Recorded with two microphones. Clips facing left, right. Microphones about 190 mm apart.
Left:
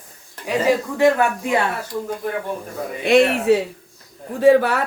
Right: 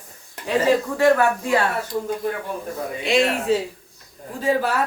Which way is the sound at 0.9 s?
20° left (ahead or behind).